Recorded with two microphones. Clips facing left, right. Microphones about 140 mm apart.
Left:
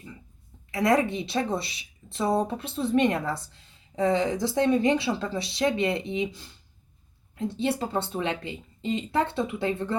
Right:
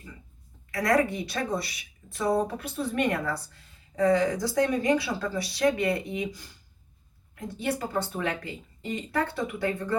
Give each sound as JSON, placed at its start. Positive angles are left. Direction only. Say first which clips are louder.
{"t": 0.7, "sound": "a woman's voice", "louder": "left 1 dB", "side_deg": 20}